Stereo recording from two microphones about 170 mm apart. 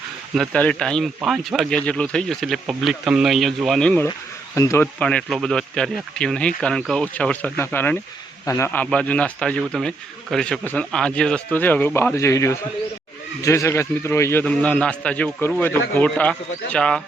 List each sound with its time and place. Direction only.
0.3 s a man's voice: 5° left (ahead or behind)
4.9 s a man's voice: 5° left (ahead or behind)